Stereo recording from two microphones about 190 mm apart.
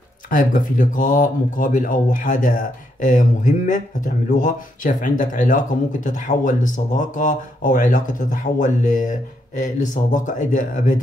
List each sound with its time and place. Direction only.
0.3 s speech: 45° left (ahead or behind)